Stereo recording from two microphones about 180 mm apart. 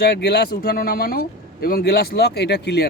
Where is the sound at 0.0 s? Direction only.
65° left (ahead or behind).